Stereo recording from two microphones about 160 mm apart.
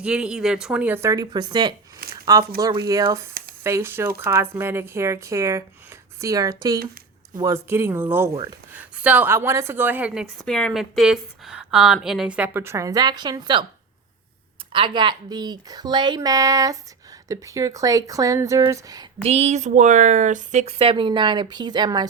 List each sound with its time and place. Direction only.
0.0 s a woman's voice: 5° right (ahead or behind)
10.4 s a woman's voice: 5° left (ahead or behind); by 13.7 s 25° right (ahead or behind)
14.7 s a woman's voice: 30° right (ahead or behind)
19.2 s speech: 40° right (ahead or behind)